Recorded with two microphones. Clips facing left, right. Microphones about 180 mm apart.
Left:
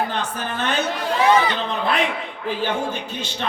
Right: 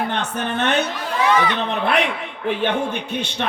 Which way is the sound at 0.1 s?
65° right (ahead or behind).